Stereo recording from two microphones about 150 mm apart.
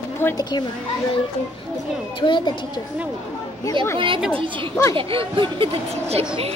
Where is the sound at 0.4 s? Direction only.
30° left (ahead or behind).